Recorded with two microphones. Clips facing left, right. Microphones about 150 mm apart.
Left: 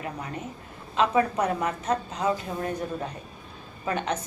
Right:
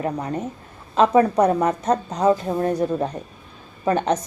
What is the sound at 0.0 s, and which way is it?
A woman's voice, 40° right (ahead or behind).